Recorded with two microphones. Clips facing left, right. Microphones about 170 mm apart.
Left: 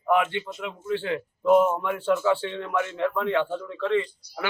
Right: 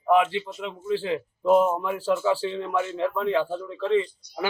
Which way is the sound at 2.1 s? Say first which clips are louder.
Even; 30° right (ahead or behind).